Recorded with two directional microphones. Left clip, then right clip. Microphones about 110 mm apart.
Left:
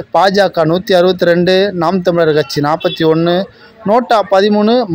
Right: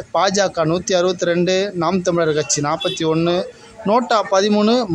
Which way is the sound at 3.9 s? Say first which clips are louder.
Left 5 dB; 30° left (ahead or behind).